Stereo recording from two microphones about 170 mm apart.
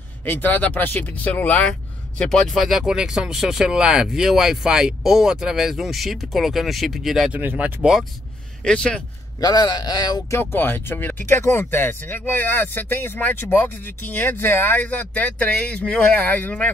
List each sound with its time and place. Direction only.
0.2 s speech: 10° left (ahead or behind); by 8.0 s 5° right (ahead or behind)
8.6 s speech: 5° left (ahead or behind)
9.4 s speech: 25° left (ahead or behind)
10.4 s speech: 10° left (ahead or behind)